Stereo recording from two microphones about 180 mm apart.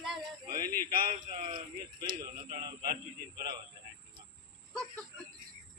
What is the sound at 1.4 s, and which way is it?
Speech, 25° right (ahead or behind).